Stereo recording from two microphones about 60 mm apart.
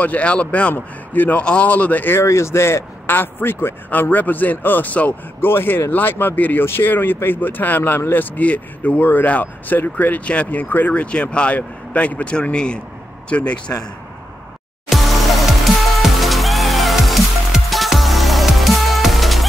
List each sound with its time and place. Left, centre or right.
0.0 s speech: left
0.7 s a man's voice: left
1.4 s speech: centre
2.2 s speech: left
3.1 s a man's voice: left
5.5 s a man's voice: left; by 13.7 s centre
14.9 s music: centre